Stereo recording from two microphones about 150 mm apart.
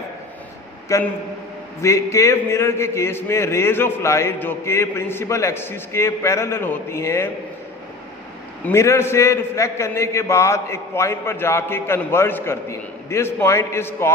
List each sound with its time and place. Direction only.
0.9 s a man's voice: 20° left (ahead or behind)
8.6 s a man's voice: 20° left (ahead or behind)